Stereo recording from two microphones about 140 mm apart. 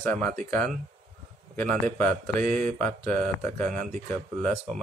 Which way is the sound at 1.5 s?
10° left (ahead or behind).